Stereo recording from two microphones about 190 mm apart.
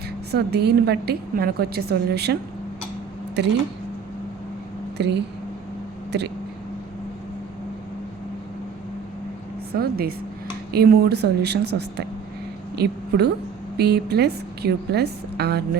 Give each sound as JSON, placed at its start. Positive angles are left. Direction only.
{"t": 0.3, "sound": "a woman's voice", "side_deg": -60}
{"t": 4.9, "sound": "speech", "side_deg": -65}
{"t": 9.7, "sound": "a woman's voice", "side_deg": -55}